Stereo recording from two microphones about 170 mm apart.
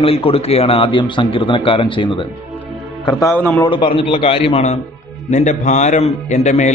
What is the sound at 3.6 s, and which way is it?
A man's voice, 30° left (ahead or behind).